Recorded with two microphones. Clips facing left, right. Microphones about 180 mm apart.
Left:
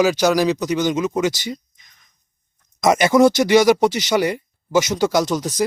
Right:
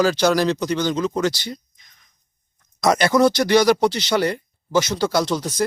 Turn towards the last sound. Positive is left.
turn(degrees=5)  # may be behind; listen again after turning